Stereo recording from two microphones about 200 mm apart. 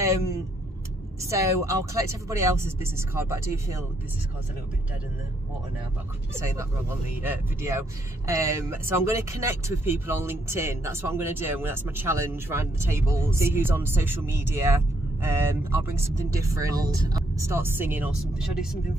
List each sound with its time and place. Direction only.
0.0 s vehicle: 15° right (ahead or behind)
1.2 s speech: 15° right (ahead or behind)
6.3 s speech: 15° right (ahead or behind)